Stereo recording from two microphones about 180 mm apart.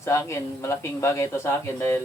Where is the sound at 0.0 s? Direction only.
15° left (ahead or behind).